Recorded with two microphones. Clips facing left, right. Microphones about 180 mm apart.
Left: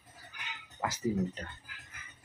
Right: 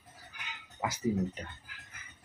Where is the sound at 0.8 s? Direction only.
15° right (ahead or behind).